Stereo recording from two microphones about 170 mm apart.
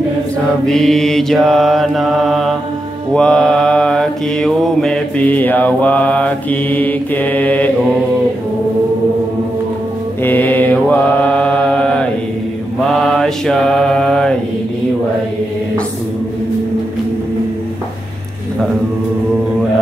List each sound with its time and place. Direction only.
0.7 s mantra: 5° left (ahead or behind)
10.2 s mantra: 10° left (ahead or behind)
13.0 s mantra: 5° left (ahead or behind)